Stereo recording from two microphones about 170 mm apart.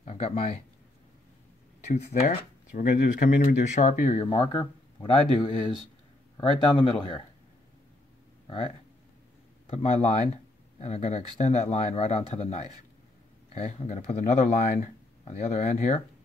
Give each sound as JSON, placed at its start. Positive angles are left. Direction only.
{"t": 0.0, "sound": "speech", "side_deg": 40}
{"t": 1.9, "sound": "speech", "side_deg": 40}
{"t": 6.3, "sound": "speech", "side_deg": 30}
{"t": 8.5, "sound": "speech", "side_deg": 30}